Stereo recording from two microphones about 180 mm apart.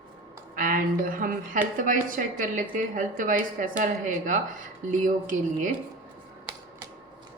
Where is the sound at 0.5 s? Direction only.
50° right (ahead or behind).